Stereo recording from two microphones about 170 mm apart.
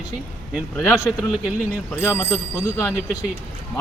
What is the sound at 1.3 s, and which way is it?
Speech, 5° right (ahead or behind).